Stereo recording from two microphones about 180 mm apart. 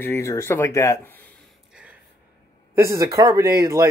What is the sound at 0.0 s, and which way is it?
Speech, 15° left (ahead or behind).